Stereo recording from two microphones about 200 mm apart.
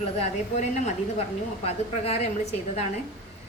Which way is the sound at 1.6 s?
30° left (ahead or behind).